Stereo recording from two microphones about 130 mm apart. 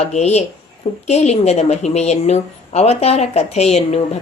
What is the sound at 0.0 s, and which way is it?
Speech, 55° left (ahead or behind).